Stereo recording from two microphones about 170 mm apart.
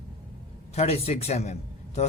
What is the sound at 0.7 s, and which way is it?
Speech, 35° left (ahead or behind).